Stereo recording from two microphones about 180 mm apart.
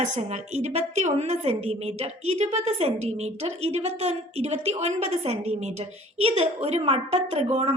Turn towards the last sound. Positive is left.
turn(degrees=-35)  # may be behind; listen again after turning